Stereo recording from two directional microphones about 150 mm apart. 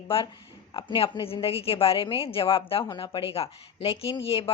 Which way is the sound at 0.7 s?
30° left (ahead or behind).